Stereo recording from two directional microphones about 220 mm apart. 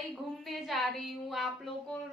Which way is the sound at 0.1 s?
Centre (ahead or behind).